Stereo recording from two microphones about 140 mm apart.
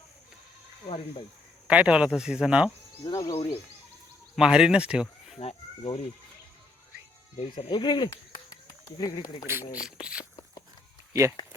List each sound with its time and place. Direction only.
1.6 s speech: 10° right (ahead or behind)
3.0 s speech: 25° left (ahead or behind)
4.4 s speech: 5° right (ahead or behind)
5.4 s speech: 45° left (ahead or behind)
7.3 s speech: 35° left (ahead or behind)
9.5 s speech: 10° right (ahead or behind)
11.1 s speech: 20° right (ahead or behind)